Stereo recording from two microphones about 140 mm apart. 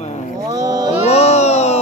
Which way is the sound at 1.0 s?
50° left (ahead or behind).